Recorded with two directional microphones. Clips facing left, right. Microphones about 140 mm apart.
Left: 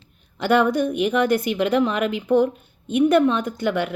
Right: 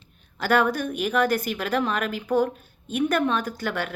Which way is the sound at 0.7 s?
20° left (ahead or behind).